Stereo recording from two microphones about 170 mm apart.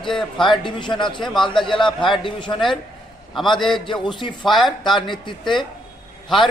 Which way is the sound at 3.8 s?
30° left (ahead or behind).